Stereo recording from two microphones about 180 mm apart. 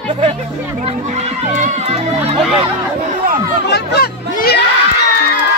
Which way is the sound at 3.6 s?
65° left (ahead or behind).